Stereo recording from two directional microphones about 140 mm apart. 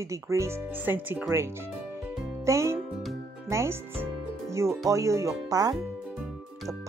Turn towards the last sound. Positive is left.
turn(degrees=-25)  # may be behind; listen again after turning